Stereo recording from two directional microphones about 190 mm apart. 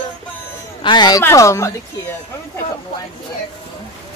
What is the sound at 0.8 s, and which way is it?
Speech, 20° left (ahead or behind).